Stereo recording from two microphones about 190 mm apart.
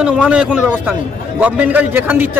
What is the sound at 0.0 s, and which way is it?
A man's voice, 5° right (ahead or behind).